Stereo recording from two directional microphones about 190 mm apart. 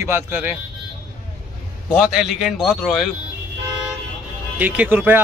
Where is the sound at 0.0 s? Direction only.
10° right (ahead or behind).